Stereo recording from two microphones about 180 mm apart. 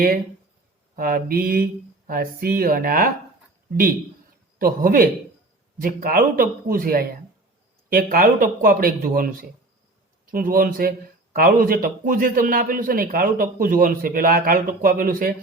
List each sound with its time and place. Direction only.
0.9 s speech: 55° right (ahead or behind)
4.5 s speech: 55° right (ahead or behind)